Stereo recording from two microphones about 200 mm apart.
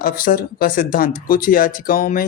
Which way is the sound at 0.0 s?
45° left (ahead or behind).